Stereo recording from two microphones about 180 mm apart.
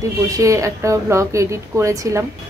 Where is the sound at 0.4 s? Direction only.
15° right (ahead or behind).